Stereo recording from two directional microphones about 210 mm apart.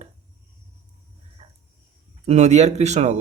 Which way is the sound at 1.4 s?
30° right (ahead or behind).